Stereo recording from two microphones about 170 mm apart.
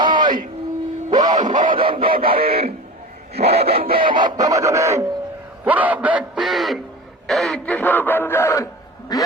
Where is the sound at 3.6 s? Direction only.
60° right (ahead or behind).